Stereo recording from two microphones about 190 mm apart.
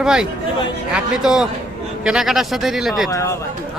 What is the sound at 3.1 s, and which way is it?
Speech, 15° left (ahead or behind).